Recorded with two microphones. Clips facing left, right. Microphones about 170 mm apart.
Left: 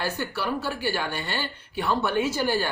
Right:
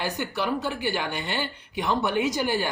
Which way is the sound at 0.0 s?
15° right (ahead or behind).